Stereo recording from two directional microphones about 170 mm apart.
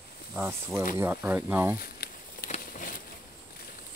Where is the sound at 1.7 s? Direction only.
60° left (ahead or behind).